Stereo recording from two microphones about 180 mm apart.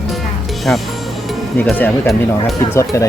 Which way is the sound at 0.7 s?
5° left (ahead or behind).